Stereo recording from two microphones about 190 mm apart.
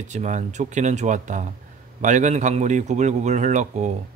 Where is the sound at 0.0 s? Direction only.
40° right (ahead or behind).